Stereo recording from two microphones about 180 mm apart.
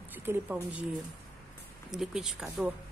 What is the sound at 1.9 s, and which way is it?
Speech, centre (ahead or behind).